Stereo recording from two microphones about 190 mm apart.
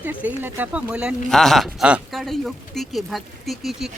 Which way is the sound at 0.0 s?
10° right (ahead or behind).